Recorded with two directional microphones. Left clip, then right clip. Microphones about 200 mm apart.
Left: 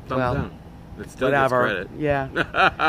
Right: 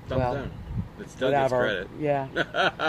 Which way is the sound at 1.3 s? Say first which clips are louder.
Left 4 dB; 15° left (ahead or behind).